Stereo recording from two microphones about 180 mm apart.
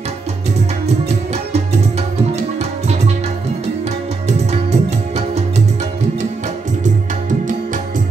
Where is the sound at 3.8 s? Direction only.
40° right (ahead or behind).